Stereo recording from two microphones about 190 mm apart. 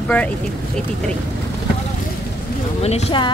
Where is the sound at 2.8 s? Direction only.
30° left (ahead or behind).